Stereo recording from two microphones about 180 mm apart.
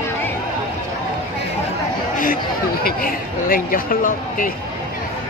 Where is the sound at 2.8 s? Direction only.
50° left (ahead or behind).